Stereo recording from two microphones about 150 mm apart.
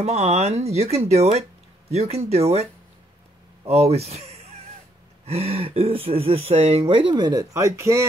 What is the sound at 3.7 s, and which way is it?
Speech, 45° right (ahead or behind).